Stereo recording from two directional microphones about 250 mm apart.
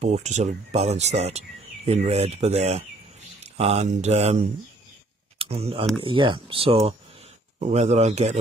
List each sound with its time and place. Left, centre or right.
0.0 s speech: right